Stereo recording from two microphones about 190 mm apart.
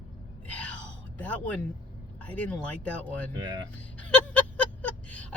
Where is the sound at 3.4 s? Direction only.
25° right (ahead or behind).